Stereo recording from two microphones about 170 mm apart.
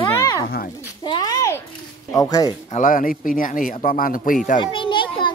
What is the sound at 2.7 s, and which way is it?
Speech, 50° left (ahead or behind).